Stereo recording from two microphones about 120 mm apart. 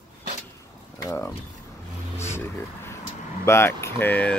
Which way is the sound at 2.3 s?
20° left (ahead or behind).